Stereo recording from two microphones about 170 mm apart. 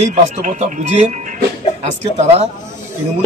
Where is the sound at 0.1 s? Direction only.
45° right (ahead or behind).